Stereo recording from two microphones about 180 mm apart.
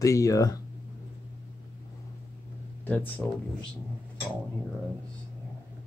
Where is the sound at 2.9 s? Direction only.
10° left (ahead or behind).